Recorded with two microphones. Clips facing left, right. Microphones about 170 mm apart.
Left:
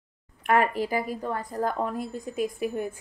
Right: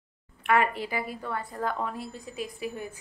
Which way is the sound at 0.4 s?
40° left (ahead or behind).